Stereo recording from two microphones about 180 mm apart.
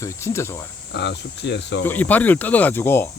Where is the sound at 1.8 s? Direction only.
10° left (ahead or behind).